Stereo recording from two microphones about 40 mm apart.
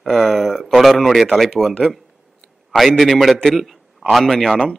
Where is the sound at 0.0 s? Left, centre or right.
Centre.